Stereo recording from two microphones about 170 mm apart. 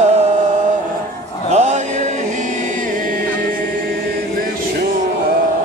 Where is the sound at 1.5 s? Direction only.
40° right (ahead or behind).